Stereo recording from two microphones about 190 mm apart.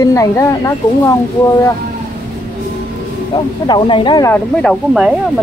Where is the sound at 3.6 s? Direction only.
25° left (ahead or behind).